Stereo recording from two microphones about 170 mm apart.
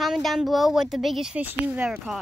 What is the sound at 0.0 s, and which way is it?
Speech, centre (ahead or behind).